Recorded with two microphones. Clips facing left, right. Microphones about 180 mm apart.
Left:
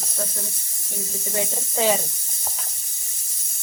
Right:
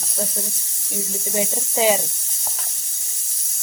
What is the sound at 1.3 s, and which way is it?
Speech, 20° right (ahead or behind).